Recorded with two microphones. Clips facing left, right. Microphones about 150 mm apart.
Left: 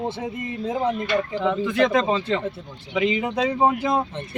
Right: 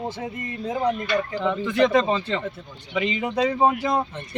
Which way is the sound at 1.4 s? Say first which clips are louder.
Even; 5° left (ahead or behind).